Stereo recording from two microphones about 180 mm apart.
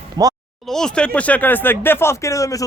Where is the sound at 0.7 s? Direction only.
5° left (ahead or behind).